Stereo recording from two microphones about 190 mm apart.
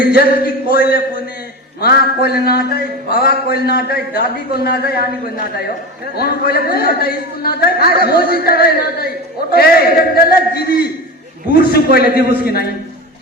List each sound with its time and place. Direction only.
0.1 s a man's voice: 55° left (ahead or behind)
6.1 s a man's voice: 55° left (ahead or behind)